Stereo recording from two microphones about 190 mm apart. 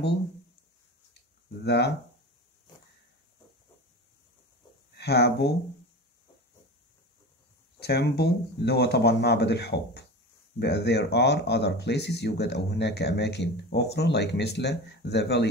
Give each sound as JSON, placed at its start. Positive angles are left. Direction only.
{"t": 1.6, "sound": "speech", "side_deg": 60}
{"t": 4.9, "sound": "speech", "side_deg": 60}
{"t": 7.8, "sound": "speech", "side_deg": 55}